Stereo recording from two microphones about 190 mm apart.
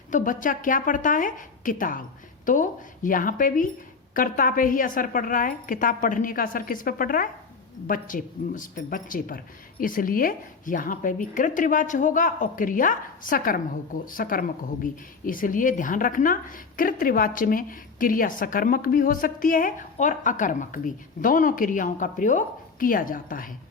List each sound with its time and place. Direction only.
0.1 s speech: 45° left (ahead or behind)